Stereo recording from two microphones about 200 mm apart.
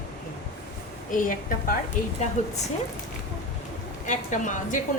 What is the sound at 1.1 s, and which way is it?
Speech, 45° left (ahead or behind).